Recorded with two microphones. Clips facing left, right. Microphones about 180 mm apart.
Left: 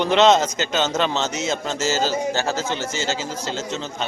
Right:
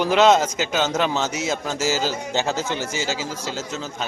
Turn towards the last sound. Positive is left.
turn(degrees=-5)  # may be behind; listen again after turning